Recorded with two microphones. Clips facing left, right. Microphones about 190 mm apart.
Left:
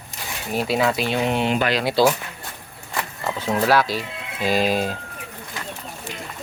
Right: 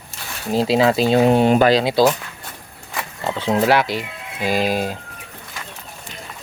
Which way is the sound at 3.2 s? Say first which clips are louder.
Right 4 dB; 25° right (ahead or behind).